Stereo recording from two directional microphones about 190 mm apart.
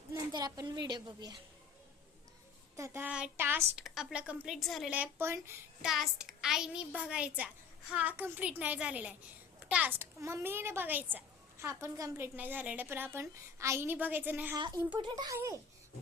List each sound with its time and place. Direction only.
0.1 s a sound: 20° right (ahead or behind)
2.7 s a woman's voice: 15° right (ahead or behind)
5.9 s a child's voice: centre (ahead or behind)